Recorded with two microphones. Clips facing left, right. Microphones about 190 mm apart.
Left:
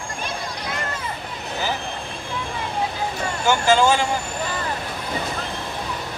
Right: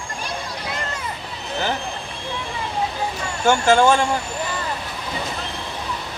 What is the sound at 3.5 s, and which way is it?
Speech, 55° right (ahead or behind).